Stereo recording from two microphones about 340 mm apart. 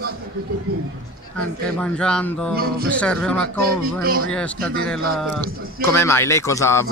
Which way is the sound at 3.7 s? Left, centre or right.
Right.